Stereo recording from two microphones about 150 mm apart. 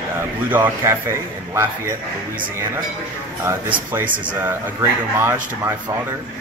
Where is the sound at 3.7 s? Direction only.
10° right (ahead or behind).